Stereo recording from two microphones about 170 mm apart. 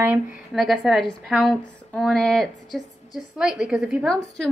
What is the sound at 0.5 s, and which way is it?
A woman's voice, centre (ahead or behind).